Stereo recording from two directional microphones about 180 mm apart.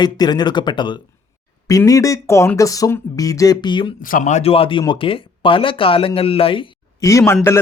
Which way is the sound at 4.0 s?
45° left (ahead or behind).